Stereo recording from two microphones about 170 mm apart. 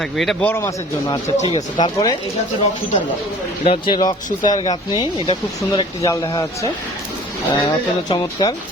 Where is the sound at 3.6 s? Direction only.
30° left (ahead or behind).